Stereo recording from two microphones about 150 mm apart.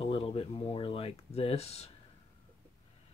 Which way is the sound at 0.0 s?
40° left (ahead or behind).